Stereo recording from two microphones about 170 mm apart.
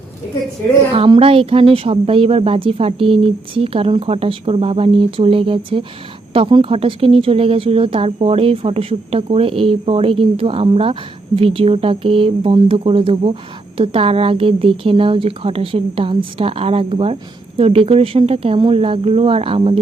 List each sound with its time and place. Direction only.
0.9 s speech: 30° right (ahead or behind)